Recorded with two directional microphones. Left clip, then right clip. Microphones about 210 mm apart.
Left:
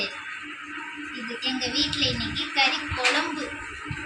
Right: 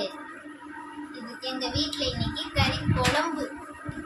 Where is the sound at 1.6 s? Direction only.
25° right (ahead or behind).